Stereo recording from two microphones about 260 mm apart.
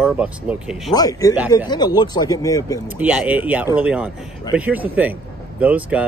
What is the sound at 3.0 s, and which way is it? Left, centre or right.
Speech, centre.